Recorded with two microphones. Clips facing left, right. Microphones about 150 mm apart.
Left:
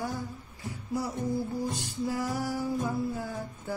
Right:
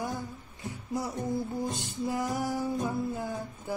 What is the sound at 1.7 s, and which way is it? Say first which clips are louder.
Music: even; 20° right (ahead or behind).